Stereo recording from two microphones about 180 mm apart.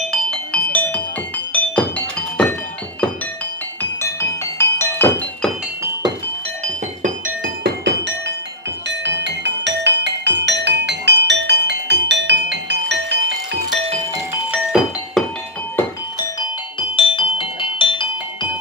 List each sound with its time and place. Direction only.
0.1 s music: 5° left (ahead or behind)
4.0 s music: 15° left (ahead or behind)
6.6 s music: 45° right (ahead or behind)
8.8 s music: 80° right
14.5 s music: 5° right (ahead or behind)
15.7 s music: 20° left (ahead or behind)